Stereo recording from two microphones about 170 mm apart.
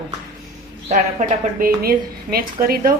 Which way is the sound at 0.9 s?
50° right (ahead or behind).